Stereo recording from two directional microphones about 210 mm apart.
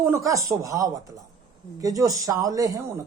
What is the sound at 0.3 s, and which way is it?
Speech, 15° right (ahead or behind).